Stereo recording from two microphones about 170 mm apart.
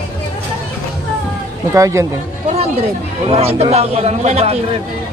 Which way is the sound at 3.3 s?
35° right (ahead or behind).